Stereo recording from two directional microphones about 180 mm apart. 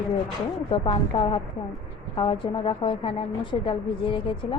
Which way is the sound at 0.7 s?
30° left (ahead or behind).